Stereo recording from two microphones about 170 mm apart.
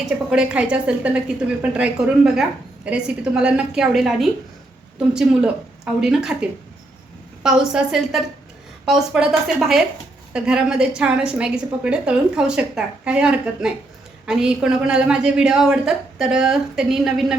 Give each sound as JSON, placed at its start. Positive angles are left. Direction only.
{"t": 0.0, "sound": "a woman's voice", "side_deg": -5}